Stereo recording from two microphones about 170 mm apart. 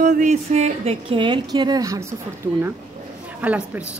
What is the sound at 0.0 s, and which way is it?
A woman's voice, 50° right (ahead or behind).